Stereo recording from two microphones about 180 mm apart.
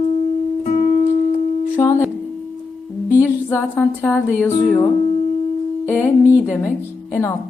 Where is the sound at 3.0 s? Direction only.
15° left (ahead or behind).